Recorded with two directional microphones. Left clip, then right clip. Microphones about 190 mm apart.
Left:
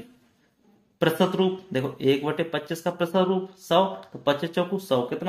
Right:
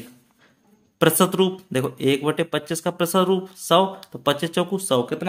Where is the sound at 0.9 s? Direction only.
35° right (ahead or behind).